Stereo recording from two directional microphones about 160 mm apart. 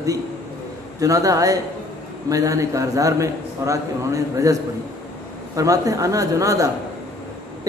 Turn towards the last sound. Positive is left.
turn(degrees=-20)  # may be behind; listen again after turning